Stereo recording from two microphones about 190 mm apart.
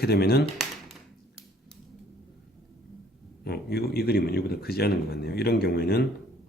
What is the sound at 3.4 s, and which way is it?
Speech, 55° left (ahead or behind).